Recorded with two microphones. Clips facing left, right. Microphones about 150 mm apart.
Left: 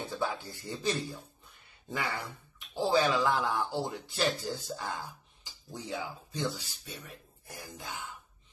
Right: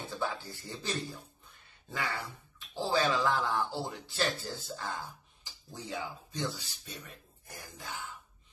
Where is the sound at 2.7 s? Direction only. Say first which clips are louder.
Left 3 dB; 15° left (ahead or behind).